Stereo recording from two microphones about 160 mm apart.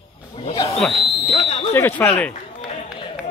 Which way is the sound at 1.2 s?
35° left (ahead or behind).